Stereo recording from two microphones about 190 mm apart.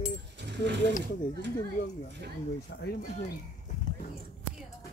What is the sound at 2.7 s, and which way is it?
Speech, 60° left (ahead or behind).